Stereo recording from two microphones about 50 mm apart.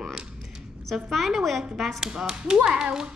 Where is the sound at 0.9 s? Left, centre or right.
Centre.